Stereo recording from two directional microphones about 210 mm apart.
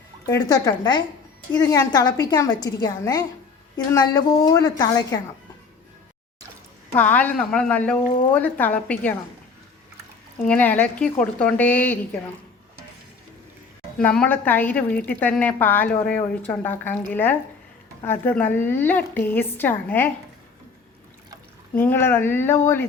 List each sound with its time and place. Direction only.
0.3 s a woman's voice: 20° left (ahead or behind)
6.9 s a woman's voice: 10° left (ahead or behind)
10.4 s a woman's voice: 5° left (ahead or behind)
14.0 s a woman's voice: 5° left (ahead or behind)
21.8 s a woman's voice: 10° left (ahead or behind)